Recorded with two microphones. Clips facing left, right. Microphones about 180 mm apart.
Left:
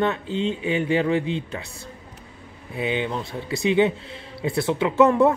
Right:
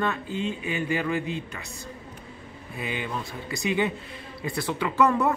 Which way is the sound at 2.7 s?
25° left (ahead or behind).